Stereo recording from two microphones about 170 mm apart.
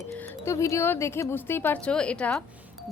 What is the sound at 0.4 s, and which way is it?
Speech, 15° left (ahead or behind).